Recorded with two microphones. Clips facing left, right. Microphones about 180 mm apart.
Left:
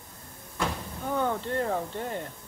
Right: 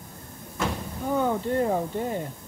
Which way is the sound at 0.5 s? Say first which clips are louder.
Right 2 dB; 10° right (ahead or behind).